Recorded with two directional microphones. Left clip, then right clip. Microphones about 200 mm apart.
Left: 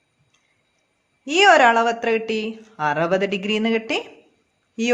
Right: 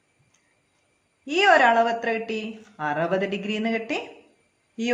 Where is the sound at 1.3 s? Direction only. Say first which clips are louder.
Left 4 dB; 45° left (ahead or behind).